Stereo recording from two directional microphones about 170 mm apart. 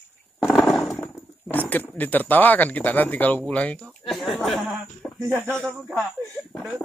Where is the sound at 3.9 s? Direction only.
Centre (ahead or behind).